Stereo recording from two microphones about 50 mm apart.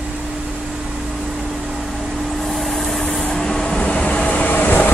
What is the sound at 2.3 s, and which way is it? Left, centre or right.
Vehicle, centre.